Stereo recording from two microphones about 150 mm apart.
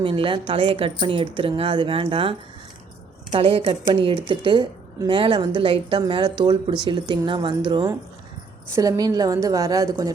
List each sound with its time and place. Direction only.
0.0 s a woman's voice: 35° right (ahead or behind)
3.3 s a woman's voice: 40° right (ahead or behind); by 10.1 s 25° right (ahead or behind)